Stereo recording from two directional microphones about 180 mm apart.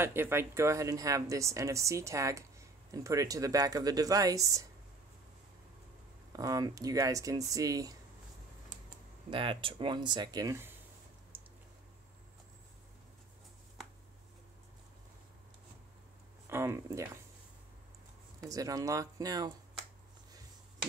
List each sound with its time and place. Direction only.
0.0 s speech: 15° right (ahead or behind)
6.3 s speech: 20° right (ahead or behind)
9.3 s speech: 30° right (ahead or behind)
16.4 s speech: 15° right (ahead or behind)
18.4 s speech: 20° right (ahead or behind)